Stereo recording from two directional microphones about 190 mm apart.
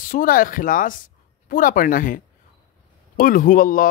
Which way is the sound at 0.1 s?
45° left (ahead or behind).